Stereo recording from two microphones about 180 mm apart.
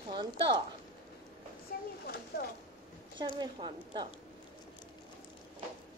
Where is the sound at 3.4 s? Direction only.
25° right (ahead or behind).